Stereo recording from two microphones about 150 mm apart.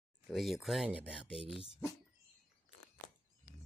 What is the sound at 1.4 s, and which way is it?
Speech, 35° left (ahead or behind).